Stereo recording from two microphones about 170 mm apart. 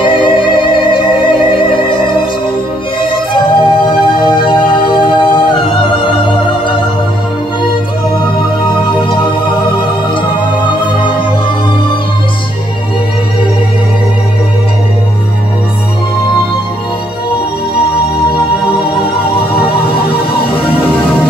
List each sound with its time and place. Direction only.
0.0 s music: 30° left (ahead or behind)
3.1 s music: 30° left (ahead or behind)
10.7 s music: 30° left (ahead or behind)